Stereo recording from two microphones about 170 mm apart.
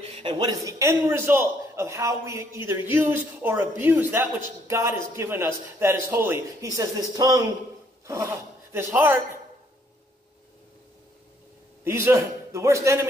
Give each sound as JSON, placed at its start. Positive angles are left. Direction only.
{"t": 0.0, "sound": "a man's voice", "side_deg": -35}
{"t": 11.8, "sound": "a man's voice", "side_deg": -15}